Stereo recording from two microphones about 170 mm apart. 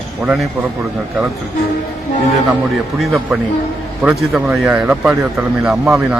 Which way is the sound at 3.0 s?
Centre (ahead or behind).